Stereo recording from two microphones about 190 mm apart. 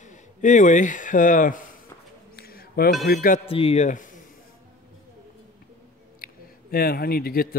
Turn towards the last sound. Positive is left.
turn(degrees=50)  # may be behind; listen again after turning